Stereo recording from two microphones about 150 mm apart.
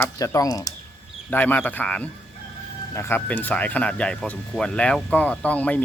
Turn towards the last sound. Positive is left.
turn(degrees=10)  # may be behind; listen again after turning